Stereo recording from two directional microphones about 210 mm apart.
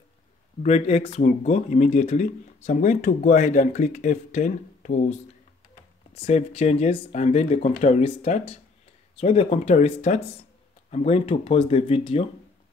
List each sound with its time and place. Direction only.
0.6 s speech: 30° left (ahead or behind)
6.1 s speech: 30° left (ahead or behind)